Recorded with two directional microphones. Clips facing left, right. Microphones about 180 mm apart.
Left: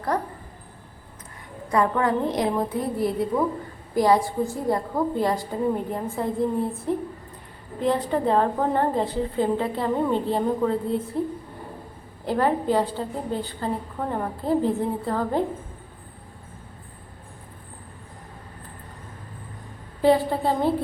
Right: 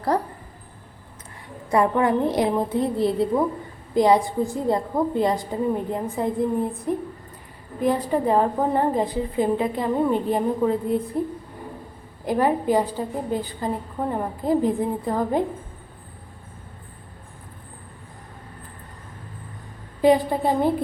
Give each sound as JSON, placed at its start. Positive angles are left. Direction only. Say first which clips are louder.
{"t": 0.1, "sound": "a woman's voice", "louder": "right 2 dB", "side_deg": -30}
{"t": 1.7, "sound": "a woman's voice", "louder": "right 2 dB", "side_deg": -25}
{"t": 12.2, "sound": "a woman's voice", "louder": "right 2 dB", "side_deg": -10}
{"t": 20.0, "sound": "a woman's voice", "louder": "right 2 dB", "side_deg": -15}